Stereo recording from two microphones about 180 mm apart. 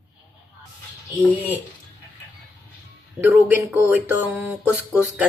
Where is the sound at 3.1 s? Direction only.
10° right (ahead or behind).